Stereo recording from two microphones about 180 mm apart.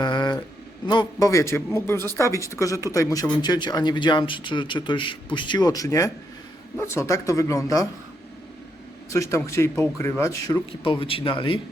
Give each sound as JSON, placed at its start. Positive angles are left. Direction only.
{"t": 0.0, "sound": "a sound", "side_deg": 25}
{"t": 0.9, "sound": "a man's voice", "side_deg": 20}
{"t": 9.0, "sound": "speech", "side_deg": 15}